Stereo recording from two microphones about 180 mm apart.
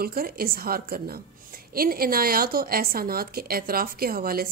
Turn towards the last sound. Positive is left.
turn(degrees=-55)  # may be behind; listen again after turning